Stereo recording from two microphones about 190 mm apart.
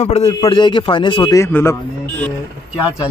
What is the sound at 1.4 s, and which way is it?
Speech, 15° left (ahead or behind).